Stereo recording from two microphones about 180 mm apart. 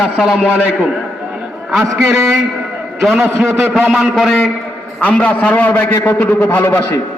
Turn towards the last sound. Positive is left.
turn(degrees=15)  # may be behind; listen again after turning